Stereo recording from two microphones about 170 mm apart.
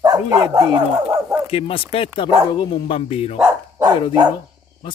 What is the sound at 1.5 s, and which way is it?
Speech, 35° left (ahead or behind).